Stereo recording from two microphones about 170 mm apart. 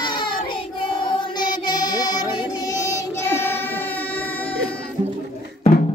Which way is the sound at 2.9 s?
15° left (ahead or behind).